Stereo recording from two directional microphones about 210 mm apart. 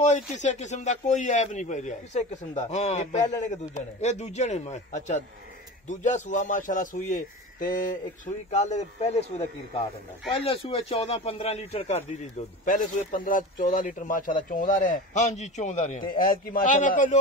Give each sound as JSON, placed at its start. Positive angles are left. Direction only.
{"t": 0.0, "sound": "a man's voice", "side_deg": 35}
{"t": 10.3, "sound": "a man's voice", "side_deg": 25}